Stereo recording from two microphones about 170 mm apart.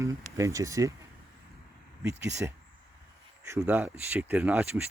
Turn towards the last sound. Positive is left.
turn(degrees=-10)  # may be behind; listen again after turning